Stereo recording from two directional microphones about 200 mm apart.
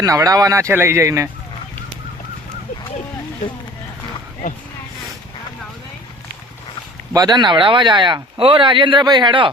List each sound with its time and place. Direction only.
0.0 s speech: 15° right (ahead or behind)
7.1 s speech: 20° right (ahead or behind)